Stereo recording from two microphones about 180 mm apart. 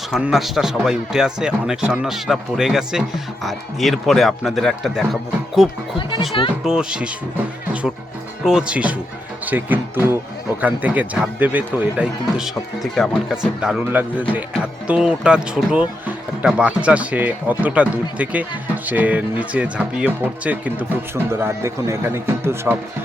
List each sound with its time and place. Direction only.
0.1 s speech: centre (ahead or behind)
6.0 s speech: 25° left (ahead or behind)
6.7 s speech: 5° right (ahead or behind)